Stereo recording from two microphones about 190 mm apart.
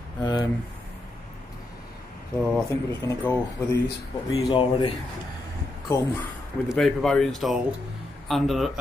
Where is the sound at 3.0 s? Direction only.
15° left (ahead or behind).